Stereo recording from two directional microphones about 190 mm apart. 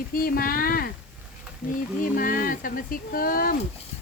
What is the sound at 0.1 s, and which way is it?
Speech, 50° left (ahead or behind).